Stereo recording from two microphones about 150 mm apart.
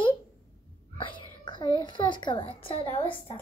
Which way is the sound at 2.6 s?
35° left (ahead or behind).